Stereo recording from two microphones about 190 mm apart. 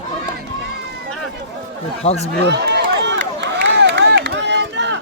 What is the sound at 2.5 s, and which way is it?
Run, 65° right (ahead or behind).